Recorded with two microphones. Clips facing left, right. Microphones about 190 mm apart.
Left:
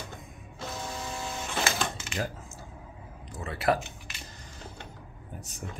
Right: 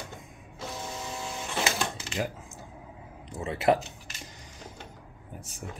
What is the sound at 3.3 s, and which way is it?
Speech, 25° right (ahead or behind).